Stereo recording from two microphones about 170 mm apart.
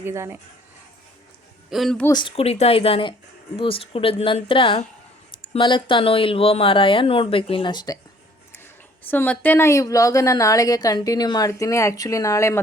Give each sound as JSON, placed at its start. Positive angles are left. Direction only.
{"t": 0.0, "sound": "speech", "side_deg": -15}
{"t": 1.7, "sound": "speech", "side_deg": 0}
{"t": 2.0, "sound": "speech", "side_deg": 25}
{"t": 9.0, "sound": "a woman's voice", "side_deg": 10}